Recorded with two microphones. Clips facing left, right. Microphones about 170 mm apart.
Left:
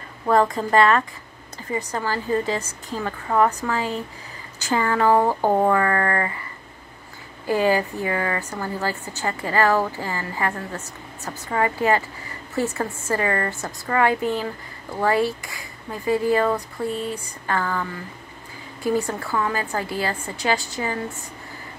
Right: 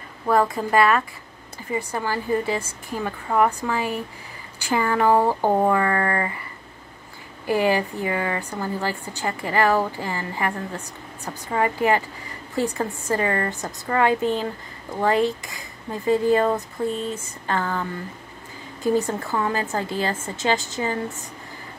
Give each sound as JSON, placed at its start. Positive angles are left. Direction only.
{"t": 0.3, "sound": "a woman's voice", "side_deg": -5}
{"t": 5.8, "sound": "a woman's voice", "side_deg": -20}
{"t": 7.4, "sound": "a woman's voice", "side_deg": -15}